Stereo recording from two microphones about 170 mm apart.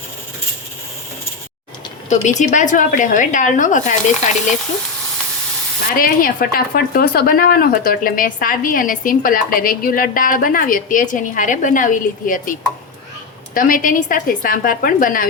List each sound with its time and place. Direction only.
2.0 s a woman's voice: 45° left (ahead or behind)
6.0 s a woman's voice: 55° left (ahead or behind)